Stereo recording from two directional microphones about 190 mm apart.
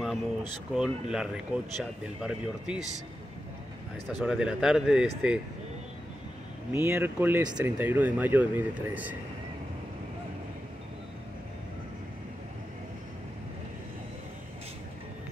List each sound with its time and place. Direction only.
0.4 s speech: 5° right (ahead or behind)
4.2 s speech: 5° right (ahead or behind)
6.7 s speech: 15° right (ahead or behind)